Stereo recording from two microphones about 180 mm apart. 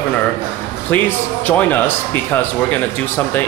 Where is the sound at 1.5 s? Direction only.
10° left (ahead or behind).